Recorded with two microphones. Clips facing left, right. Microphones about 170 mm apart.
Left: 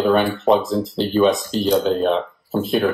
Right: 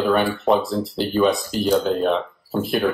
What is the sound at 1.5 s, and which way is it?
Speech, 30° left (ahead or behind).